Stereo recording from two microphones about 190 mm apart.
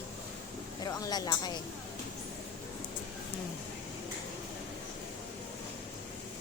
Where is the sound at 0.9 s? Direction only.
20° left (ahead or behind).